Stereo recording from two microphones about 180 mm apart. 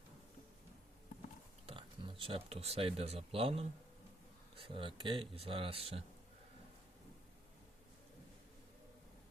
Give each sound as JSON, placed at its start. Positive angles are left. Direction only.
{"t": 1.6, "sound": "speech", "side_deg": -30}